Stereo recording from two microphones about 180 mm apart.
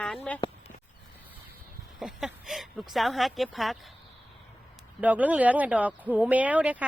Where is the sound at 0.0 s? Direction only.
5° left (ahead or behind).